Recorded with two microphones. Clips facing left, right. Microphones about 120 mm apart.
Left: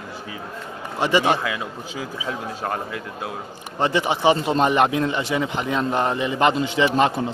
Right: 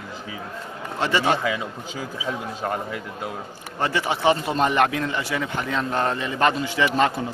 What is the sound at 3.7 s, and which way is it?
Speech, 20° left (ahead or behind).